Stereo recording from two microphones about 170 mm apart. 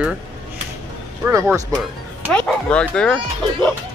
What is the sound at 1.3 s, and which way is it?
Speech, 15° right (ahead or behind).